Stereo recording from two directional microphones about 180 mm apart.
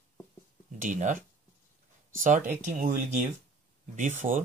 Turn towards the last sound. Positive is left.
turn(degrees=-45)  # may be behind; listen again after turning